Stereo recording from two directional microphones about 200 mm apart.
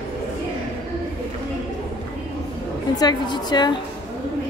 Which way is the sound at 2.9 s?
20° left (ahead or behind).